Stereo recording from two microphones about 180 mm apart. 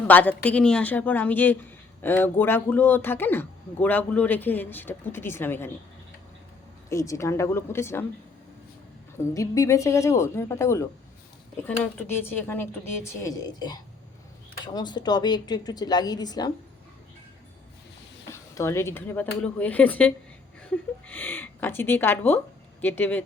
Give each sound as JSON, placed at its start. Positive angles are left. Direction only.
{"t": 0.1, "sound": "speech", "side_deg": 10}
{"t": 6.9, "sound": "speech", "side_deg": 15}
{"t": 9.1, "sound": "speech", "side_deg": 20}
{"t": 18.3, "sound": "speech", "side_deg": 15}